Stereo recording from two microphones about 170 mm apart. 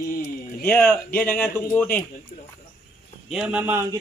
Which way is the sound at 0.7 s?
10° left (ahead or behind).